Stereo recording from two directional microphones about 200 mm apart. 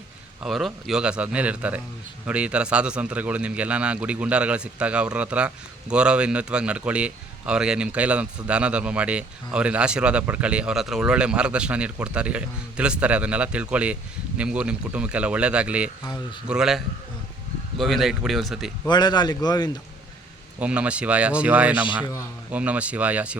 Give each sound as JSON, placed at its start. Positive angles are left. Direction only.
{"t": 0.4, "sound": "a man's voice", "side_deg": 0}
{"t": 18.9, "sound": "a man's voice", "side_deg": 20}
{"t": 20.6, "sound": "speech", "side_deg": -5}